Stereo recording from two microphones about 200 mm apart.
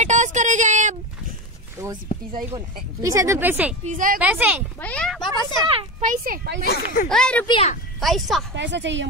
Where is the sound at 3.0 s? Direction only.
15° right (ahead or behind).